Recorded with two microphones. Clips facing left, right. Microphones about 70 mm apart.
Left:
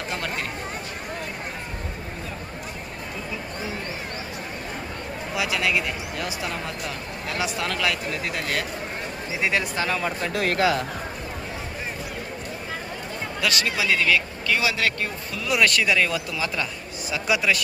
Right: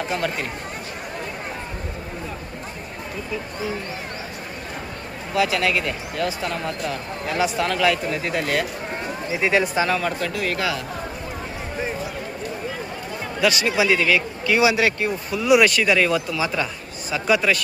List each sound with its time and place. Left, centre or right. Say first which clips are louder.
0.1 s speech: right 2 dB; centre
5.3 s speech: right 4 dB; centre
10.2 s speech: even; left
10.5 s speech: left 3 dB; left
13.4 s speech: right 6 dB; centre
14.4 s speech: right 9 dB; centre
15.0 s speech: right 7 dB; centre